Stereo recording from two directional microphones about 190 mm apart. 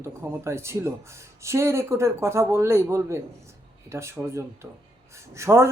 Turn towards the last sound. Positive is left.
turn(degrees=-15)  # may be behind; listen again after turning